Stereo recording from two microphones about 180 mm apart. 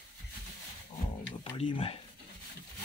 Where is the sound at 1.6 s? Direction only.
30° left (ahead or behind).